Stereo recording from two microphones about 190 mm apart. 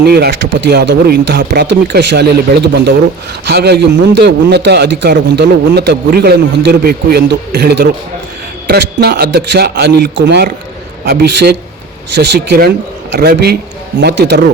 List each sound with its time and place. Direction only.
0.0 s a man's voice: 55° right (ahead or behind)